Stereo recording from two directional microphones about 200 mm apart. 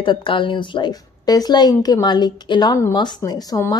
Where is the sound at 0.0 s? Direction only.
25° left (ahead or behind).